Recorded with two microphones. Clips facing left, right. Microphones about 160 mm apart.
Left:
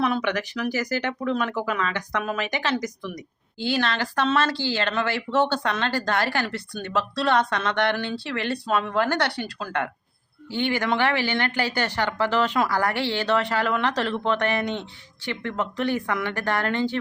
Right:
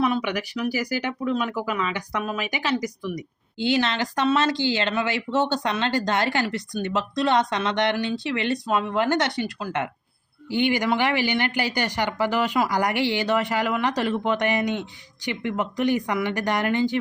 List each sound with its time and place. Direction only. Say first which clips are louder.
0.0 s a woman's voice: even; 5° right (ahead or behind)